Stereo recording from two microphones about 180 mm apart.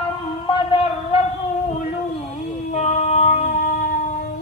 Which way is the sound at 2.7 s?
40° left (ahead or behind).